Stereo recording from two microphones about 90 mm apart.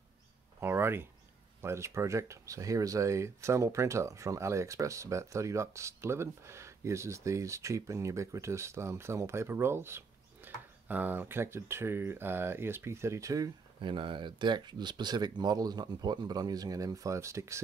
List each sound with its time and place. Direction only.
0.6 s a sound: 25° right (ahead or behind)
1.6 s speech: 30° right (ahead or behind)
13.7 s speech: 70° right (ahead or behind); by 17.6 s 35° right (ahead or behind)